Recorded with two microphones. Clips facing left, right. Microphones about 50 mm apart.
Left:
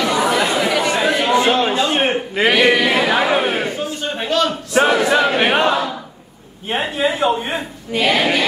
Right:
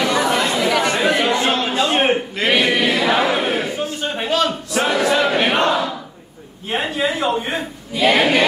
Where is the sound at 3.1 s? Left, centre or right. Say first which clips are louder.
Left 1 dB; centre.